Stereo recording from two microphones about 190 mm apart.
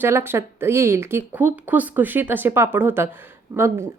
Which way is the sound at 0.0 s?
10° right (ahead or behind).